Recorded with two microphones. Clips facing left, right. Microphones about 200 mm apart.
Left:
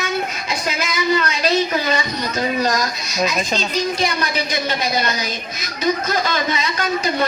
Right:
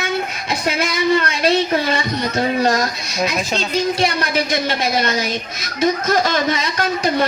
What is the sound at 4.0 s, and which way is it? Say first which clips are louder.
Speech: right 3 dB; 60° right (ahead or behind).